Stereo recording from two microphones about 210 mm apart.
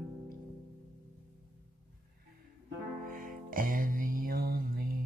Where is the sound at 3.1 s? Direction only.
40° right (ahead or behind).